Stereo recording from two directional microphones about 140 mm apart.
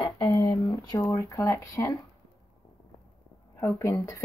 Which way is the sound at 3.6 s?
20° left (ahead or behind).